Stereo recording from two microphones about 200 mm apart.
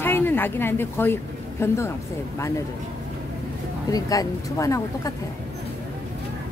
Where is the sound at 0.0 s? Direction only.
10° left (ahead or behind).